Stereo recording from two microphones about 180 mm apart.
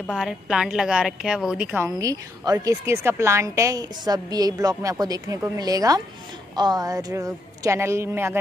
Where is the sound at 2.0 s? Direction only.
20° right (ahead or behind).